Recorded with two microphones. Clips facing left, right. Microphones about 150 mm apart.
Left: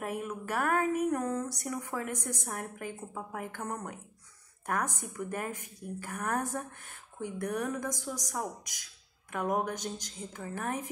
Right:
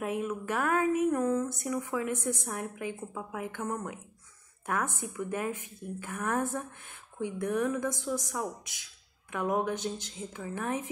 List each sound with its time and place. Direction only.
0.0 s a woman's voice: 40° left (ahead or behind)